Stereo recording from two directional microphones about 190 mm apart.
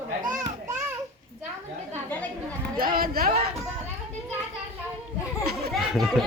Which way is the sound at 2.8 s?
50° right (ahead or behind).